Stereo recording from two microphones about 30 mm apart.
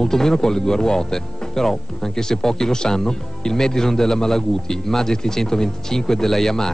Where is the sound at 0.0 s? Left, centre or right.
Centre.